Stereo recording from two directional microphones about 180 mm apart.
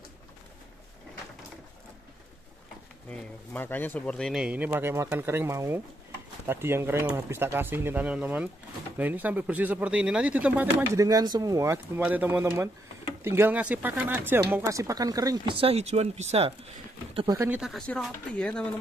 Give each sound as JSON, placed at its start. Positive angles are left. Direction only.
{"t": 3.1, "sound": "speech", "side_deg": 10}
{"t": 11.0, "sound": "speech", "side_deg": -20}
{"t": 17.4, "sound": "speech", "side_deg": -5}